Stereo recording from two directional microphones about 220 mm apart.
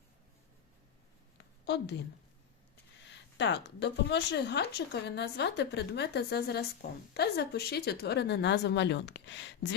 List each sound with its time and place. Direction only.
1.6 s a woman's voice: 50° left (ahead or behind)
3.1 s speech: 50° left (ahead or behind)